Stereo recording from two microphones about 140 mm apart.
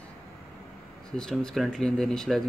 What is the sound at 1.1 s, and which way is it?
Speech, 5° left (ahead or behind).